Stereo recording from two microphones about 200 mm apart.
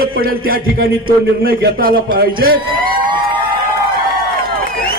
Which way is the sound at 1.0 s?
45° right (ahead or behind).